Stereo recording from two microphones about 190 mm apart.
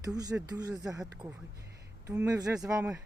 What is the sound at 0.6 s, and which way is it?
Speech, 20° right (ahead or behind).